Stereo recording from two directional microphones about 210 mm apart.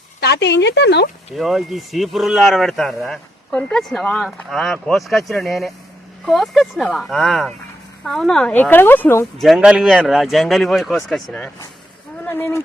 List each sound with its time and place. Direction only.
0.2 s speech: 50° left (ahead or behind)
1.4 s speech: centre (ahead or behind)
9.4 s speech: centre (ahead or behind)